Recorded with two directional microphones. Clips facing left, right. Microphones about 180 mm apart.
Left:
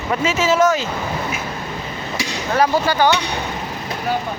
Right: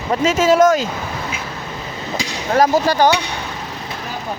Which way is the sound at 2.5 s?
40° right (ahead or behind).